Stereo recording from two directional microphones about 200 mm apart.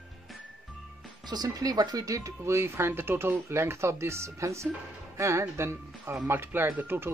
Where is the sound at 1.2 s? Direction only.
20° right (ahead or behind).